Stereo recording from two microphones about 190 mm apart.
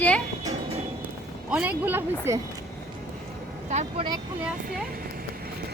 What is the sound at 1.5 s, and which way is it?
Speech, 5° right (ahead or behind).